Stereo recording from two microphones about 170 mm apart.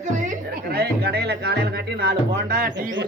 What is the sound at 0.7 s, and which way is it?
Speech, 70° right (ahead or behind).